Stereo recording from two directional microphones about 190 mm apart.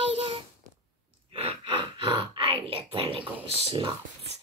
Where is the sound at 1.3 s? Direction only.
30° right (ahead or behind).